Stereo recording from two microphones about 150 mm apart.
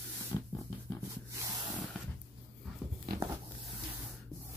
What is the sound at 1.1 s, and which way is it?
Spray, 20° right (ahead or behind).